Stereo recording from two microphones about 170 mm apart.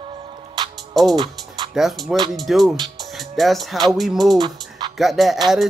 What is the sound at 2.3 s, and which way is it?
Speech, centre (ahead or behind).